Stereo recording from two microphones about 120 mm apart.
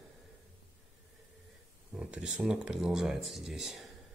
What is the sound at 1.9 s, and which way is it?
Speech, 10° right (ahead or behind).